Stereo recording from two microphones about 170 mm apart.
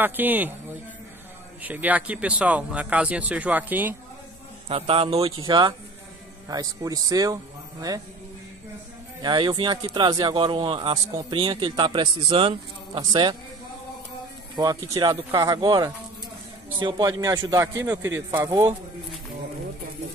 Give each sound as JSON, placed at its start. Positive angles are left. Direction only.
{"t": 0.0, "sound": "speech", "side_deg": -10}
{"t": 1.6, "sound": "speech", "side_deg": -10}
{"t": 4.6, "sound": "a man's voice", "side_deg": -35}
{"t": 9.2, "sound": "speech", "side_deg": -25}
{"t": 15.0, "sound": "speech", "side_deg": -25}